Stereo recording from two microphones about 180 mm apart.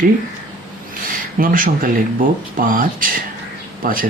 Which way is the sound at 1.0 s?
50° right (ahead or behind).